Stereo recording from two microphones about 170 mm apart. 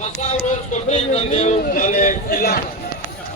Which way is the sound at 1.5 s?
50° left (ahead or behind).